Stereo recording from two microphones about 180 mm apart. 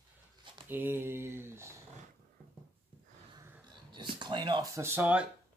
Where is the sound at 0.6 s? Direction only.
10° right (ahead or behind).